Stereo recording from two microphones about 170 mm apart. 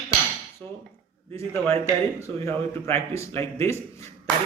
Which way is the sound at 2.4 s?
15° left (ahead or behind).